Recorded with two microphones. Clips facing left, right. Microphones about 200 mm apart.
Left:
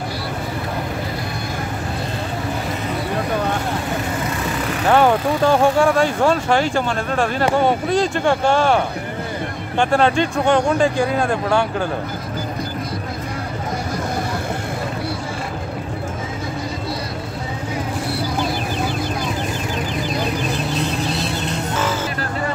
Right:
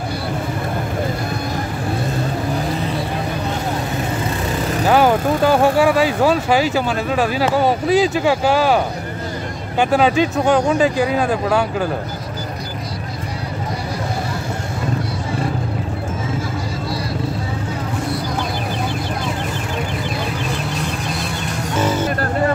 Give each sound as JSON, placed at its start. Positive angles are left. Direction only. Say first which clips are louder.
{"t": 4.8, "sound": "speech", "louder": "even", "side_deg": -5}
{"t": 21.1, "sound": "music", "louder": "left 2 dB", "side_deg": 25}